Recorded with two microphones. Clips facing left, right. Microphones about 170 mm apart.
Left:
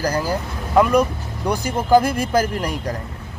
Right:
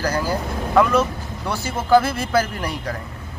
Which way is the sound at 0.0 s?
10° left (ahead or behind).